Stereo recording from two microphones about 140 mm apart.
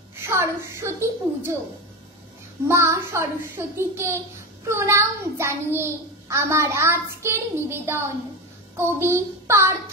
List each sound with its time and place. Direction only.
0.2 s a woman's voice: 20° right (ahead or behind)
2.7 s a child's voice: 20° right (ahead or behind)
8.7 s child singing: 20° right (ahead or behind)